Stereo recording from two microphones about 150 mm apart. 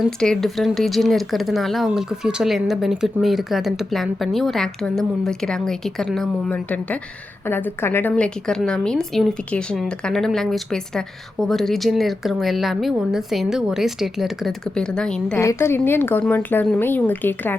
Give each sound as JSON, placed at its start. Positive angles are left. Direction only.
{"t": 0.2, "sound": "a woman's voice", "side_deg": 5}
{"t": 15.4, "sound": "speech", "side_deg": 20}